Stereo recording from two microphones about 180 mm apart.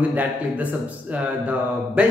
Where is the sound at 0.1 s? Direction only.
10° right (ahead or behind).